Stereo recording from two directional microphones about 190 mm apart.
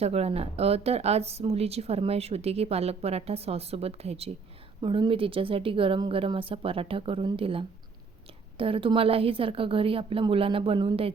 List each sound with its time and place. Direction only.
0.0 s a woman's voice: 35° right (ahead or behind)